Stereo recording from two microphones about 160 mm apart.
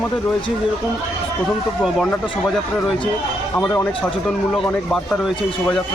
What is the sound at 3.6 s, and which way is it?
Speech, 10° left (ahead or behind).